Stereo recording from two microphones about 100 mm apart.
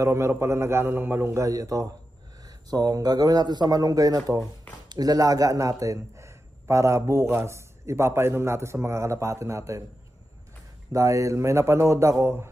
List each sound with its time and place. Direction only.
0.0 s a man's voice: 25° right (ahead or behind)
10.9 s speech: 35° right (ahead or behind)